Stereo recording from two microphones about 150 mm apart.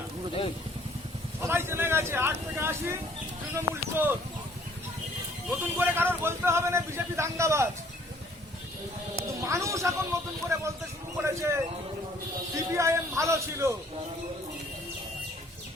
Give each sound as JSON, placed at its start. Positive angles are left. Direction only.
{"t": 1.4, "sound": "speech", "side_deg": -15}
{"t": 5.5, "sound": "speech", "side_deg": -15}
{"t": 9.4, "sound": "a man's voice", "side_deg": -20}